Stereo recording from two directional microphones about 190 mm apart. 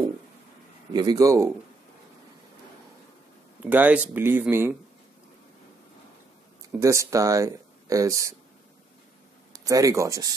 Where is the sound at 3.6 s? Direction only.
10° right (ahead or behind).